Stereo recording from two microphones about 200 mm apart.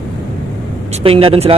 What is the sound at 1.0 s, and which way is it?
Speech, 30° right (ahead or behind).